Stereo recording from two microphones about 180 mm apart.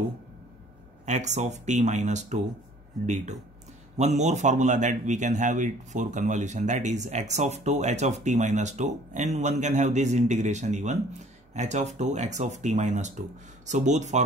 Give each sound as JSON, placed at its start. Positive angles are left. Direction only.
{"t": 1.0, "sound": "a man's voice", "side_deg": -40}
{"t": 3.9, "sound": "a man's voice", "side_deg": -40}